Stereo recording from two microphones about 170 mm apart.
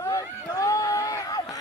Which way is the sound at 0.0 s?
20° left (ahead or behind).